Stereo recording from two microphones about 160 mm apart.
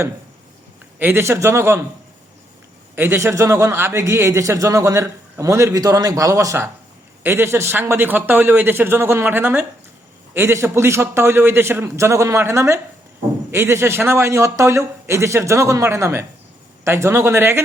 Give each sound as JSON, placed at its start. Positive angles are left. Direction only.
{"t": 0.9, "sound": "a man's voice", "side_deg": -15}
{"t": 2.9, "sound": "a man's voice", "side_deg": -15}